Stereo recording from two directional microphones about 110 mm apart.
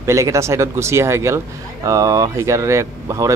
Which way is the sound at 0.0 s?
25° right (ahead or behind).